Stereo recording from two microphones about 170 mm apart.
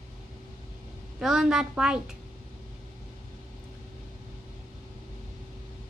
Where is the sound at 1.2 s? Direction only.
5° right (ahead or behind).